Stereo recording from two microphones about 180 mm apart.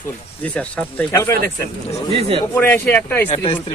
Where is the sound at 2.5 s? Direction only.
10° left (ahead or behind).